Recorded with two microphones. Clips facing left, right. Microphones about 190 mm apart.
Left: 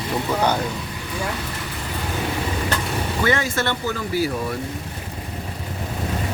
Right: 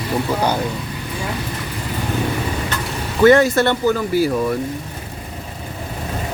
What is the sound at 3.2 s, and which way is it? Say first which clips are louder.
Speech: right 11 dB; 50° right (ahead or behind).